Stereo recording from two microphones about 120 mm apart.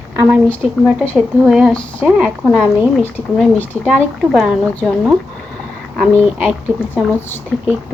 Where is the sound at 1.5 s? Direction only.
5° right (ahead or behind).